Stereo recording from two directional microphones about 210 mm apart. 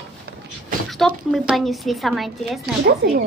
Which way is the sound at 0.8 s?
Centre (ahead or behind).